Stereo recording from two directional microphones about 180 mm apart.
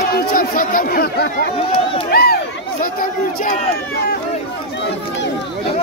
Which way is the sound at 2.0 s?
60° left (ahead or behind).